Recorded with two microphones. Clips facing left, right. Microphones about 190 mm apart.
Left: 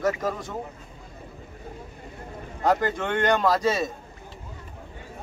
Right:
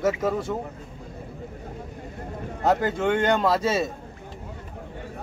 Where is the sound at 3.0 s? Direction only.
5° right (ahead or behind).